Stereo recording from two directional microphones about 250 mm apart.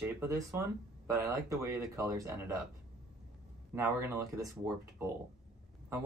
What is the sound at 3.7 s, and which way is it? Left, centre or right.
Speech, centre.